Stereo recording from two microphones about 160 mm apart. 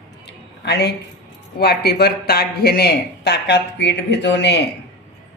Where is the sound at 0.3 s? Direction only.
90° left.